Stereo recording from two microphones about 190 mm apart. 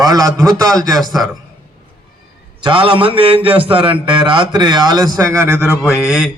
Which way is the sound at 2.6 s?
25° right (ahead or behind).